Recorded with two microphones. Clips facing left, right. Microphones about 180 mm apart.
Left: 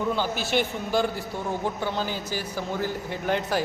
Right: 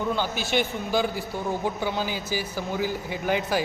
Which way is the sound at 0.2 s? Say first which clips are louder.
Even; centre (ahead or behind).